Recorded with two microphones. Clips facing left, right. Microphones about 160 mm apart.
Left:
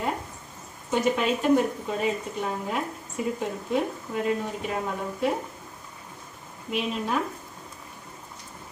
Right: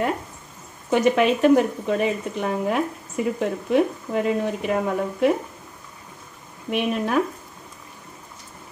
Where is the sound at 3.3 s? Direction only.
75° right (ahead or behind).